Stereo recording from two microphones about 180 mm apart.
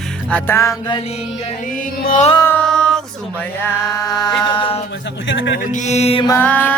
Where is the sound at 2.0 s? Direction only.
45° left (ahead or behind).